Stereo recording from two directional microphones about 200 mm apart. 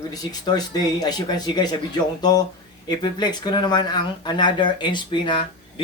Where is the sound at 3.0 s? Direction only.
20° left (ahead or behind).